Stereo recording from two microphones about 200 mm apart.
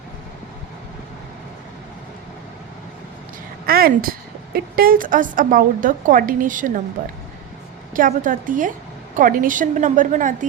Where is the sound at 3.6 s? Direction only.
50° right (ahead or behind).